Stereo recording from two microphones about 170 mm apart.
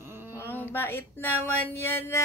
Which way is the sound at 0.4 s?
15° left (ahead or behind).